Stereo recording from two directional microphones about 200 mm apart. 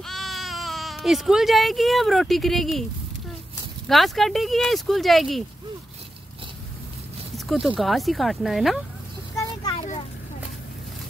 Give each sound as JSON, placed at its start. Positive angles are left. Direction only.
{"t": 0.0, "sound": "speech", "side_deg": 0}
{"t": 3.8, "sound": "speech", "side_deg": 0}
{"t": 7.3, "sound": "speech", "side_deg": 0}
{"t": 9.3, "sound": "vehicle", "side_deg": 15}
{"t": 9.8, "sound": "vehicle", "side_deg": 35}